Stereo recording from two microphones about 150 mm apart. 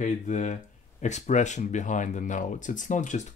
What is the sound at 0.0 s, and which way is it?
Speech, 55° left (ahead or behind).